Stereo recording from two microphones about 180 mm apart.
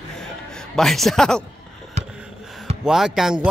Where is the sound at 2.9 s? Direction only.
Centre (ahead or behind).